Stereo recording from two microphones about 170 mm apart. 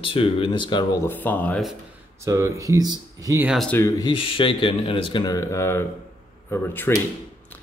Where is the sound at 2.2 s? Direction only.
15° right (ahead or behind).